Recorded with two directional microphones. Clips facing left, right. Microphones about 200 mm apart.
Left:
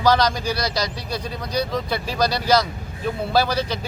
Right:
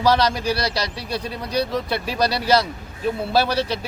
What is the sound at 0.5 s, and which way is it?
Speech, 30° right (ahead or behind).